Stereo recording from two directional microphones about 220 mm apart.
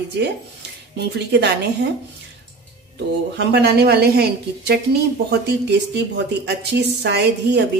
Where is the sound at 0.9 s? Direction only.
50° right (ahead or behind).